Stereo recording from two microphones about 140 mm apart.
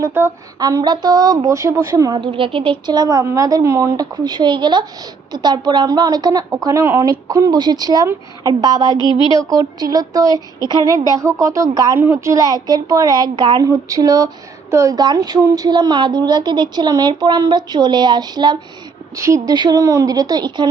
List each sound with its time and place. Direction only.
0.0 s a woman's voice: 15° right (ahead or behind)
0.6 s a woman's voice: 30° right (ahead or behind)
9.1 s speech: 35° left (ahead or behind)
9.5 s a woman's voice: 25° right (ahead or behind)